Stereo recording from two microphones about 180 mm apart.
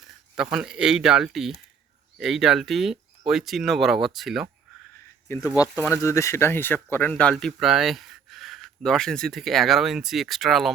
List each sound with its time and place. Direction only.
0.3 s speech: 5° right (ahead or behind)
5.3 s speech: 15° left (ahead or behind); by 10.7 s centre (ahead or behind)